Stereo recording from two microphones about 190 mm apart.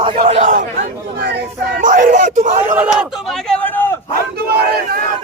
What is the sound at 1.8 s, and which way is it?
Speech, 45° right (ahead or behind).